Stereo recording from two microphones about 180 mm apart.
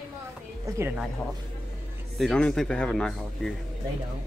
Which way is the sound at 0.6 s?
15° right (ahead or behind).